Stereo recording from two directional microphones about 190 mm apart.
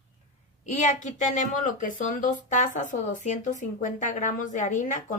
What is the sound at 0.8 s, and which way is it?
Speech, 40° left (ahead or behind).